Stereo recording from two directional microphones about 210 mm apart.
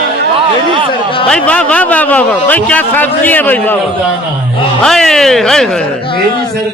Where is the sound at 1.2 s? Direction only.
5° left (ahead or behind).